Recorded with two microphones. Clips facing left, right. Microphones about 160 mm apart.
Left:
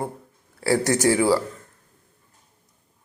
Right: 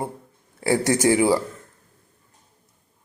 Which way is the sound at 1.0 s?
20° right (ahead or behind).